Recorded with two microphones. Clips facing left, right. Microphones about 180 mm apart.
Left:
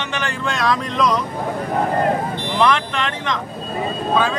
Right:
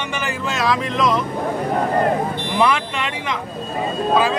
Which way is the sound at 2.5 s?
10° right (ahead or behind).